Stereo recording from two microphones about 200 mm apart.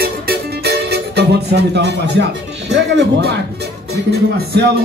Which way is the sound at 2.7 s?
60° right (ahead or behind).